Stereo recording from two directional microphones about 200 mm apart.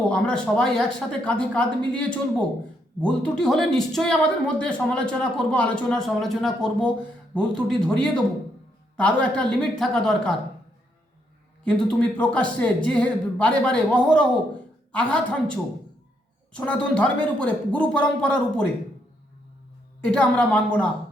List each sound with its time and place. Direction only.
0.1 s speech: 5° left (ahead or behind)
11.6 s speech: 5° left (ahead or behind)
20.0 s speech: 5° left (ahead or behind)